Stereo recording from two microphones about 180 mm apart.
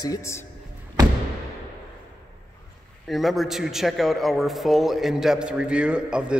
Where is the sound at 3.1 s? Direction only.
Centre (ahead or behind).